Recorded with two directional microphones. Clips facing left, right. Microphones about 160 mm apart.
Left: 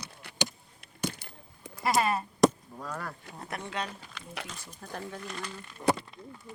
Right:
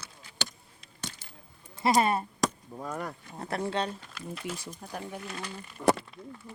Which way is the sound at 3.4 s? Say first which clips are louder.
Right 6 dB; 35° right (ahead or behind).